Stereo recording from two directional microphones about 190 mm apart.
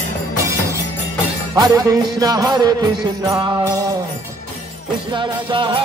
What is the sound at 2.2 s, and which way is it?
Music, 20° right (ahead or behind).